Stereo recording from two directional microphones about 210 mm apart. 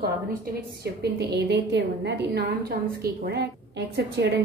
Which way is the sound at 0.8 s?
50° right (ahead or behind).